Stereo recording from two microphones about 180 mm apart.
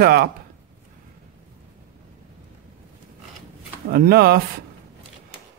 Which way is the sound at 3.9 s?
60° right (ahead or behind).